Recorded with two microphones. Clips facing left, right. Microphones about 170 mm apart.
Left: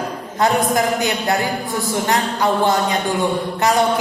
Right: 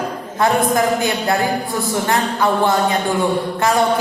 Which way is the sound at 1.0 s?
20° left (ahead or behind).